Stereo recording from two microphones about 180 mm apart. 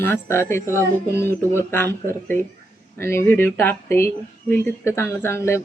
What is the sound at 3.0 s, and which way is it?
Speech, 15° left (ahead or behind).